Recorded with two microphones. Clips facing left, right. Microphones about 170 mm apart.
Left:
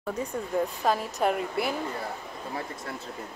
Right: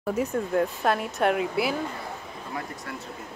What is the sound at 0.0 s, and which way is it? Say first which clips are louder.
A woman's voice: right 5 dB; 5° right (ahead or behind).